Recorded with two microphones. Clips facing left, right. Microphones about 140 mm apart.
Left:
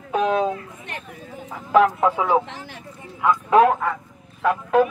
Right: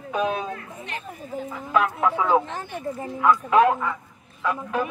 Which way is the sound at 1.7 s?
30° left (ahead or behind).